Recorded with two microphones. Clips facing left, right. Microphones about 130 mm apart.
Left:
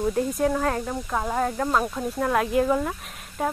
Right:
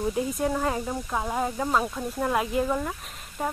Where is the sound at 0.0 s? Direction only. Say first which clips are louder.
Left 3 dB; 5° right (ahead or behind).